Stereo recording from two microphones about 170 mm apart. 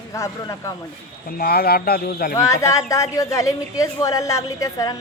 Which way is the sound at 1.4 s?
65° left (ahead or behind).